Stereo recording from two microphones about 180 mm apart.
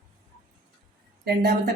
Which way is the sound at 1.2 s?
65° right (ahead or behind).